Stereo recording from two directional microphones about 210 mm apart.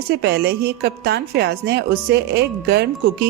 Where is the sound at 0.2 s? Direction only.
50° right (ahead or behind).